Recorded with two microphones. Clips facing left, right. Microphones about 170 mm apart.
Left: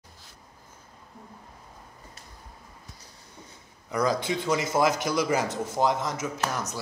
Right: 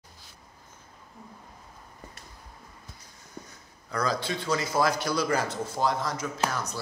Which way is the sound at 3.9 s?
20° left (ahead or behind).